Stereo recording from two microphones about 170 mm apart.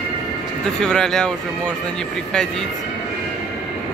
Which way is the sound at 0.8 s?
5° left (ahead or behind).